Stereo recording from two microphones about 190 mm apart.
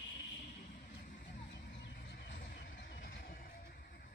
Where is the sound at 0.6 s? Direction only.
45° left (ahead or behind).